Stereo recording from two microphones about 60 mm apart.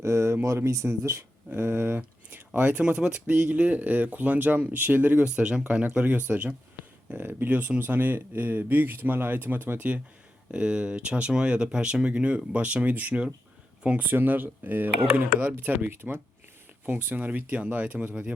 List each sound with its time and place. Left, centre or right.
0.0 s a sound: right
0.4 s speech: right
1.5 s speech: right
5.2 s speech: centre